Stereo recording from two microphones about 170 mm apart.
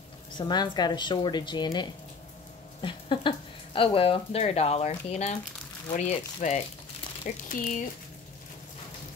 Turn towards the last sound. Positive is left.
turn(degrees=50)  # may be behind; listen again after turning